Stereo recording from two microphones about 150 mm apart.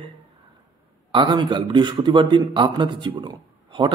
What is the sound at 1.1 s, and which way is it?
Speech, 30° right (ahead or behind).